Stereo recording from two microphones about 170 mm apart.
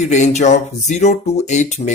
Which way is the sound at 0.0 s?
45° left (ahead or behind).